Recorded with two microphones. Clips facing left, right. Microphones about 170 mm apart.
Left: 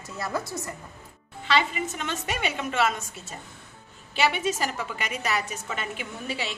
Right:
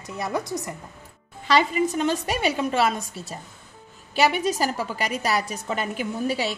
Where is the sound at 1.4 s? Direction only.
40° right (ahead or behind).